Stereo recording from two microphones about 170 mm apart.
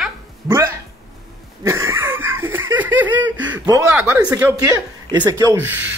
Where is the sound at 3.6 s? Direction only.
20° right (ahead or behind).